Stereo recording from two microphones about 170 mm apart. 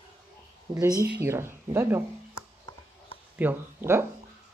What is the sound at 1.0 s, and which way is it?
Speech, 15° right (ahead or behind).